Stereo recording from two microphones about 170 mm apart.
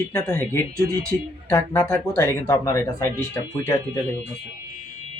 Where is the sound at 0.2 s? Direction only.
10° left (ahead or behind).